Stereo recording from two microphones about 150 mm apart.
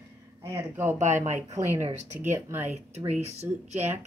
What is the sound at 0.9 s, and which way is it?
Speech, 50° right (ahead or behind).